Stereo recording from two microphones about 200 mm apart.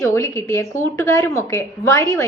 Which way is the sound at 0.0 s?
15° left (ahead or behind).